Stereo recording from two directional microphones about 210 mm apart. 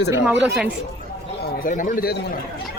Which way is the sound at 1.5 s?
40° left (ahead or behind).